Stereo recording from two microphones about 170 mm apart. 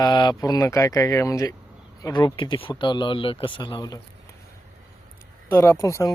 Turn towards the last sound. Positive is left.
turn(degrees=20)  # may be behind; listen again after turning